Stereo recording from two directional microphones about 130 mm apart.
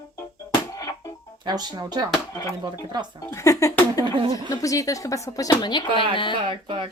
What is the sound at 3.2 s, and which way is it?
Speech, 20° left (ahead or behind).